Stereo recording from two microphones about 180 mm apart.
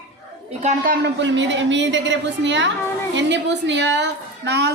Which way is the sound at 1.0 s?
85° right.